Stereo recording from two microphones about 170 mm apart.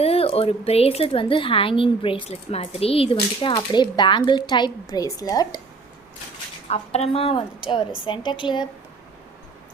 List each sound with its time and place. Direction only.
0.0 s speech: 35° left (ahead or behind)
6.7 s a woman's voice: 35° left (ahead or behind)